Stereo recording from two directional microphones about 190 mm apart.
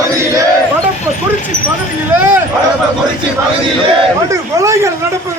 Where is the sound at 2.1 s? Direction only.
10° right (ahead or behind).